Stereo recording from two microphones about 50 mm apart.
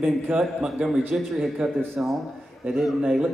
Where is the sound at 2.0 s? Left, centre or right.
Right.